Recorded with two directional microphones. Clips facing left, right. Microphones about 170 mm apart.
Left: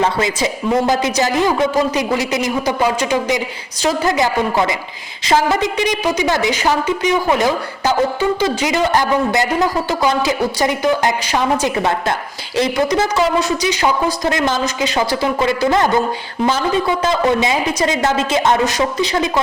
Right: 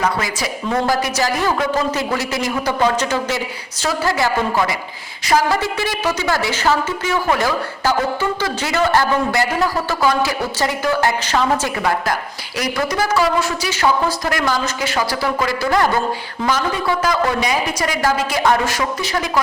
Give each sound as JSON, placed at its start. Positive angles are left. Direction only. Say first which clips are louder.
{"t": 0.0, "sound": "a woman's voice", "louder": "left 4 dB", "side_deg": 25}